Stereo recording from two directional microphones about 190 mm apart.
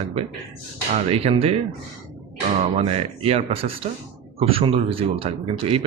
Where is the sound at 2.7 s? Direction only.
30° right (ahead or behind).